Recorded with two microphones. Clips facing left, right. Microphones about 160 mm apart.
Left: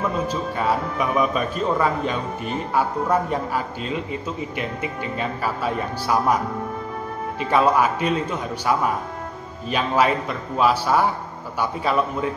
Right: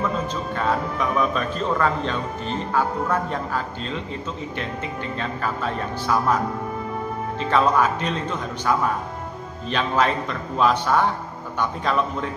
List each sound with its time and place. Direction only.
0.3 s speech: 10° left (ahead or behind)
5.1 s speech: 10° left (ahead or behind)